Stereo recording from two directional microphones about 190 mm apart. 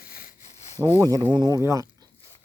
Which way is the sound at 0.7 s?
15° right (ahead or behind).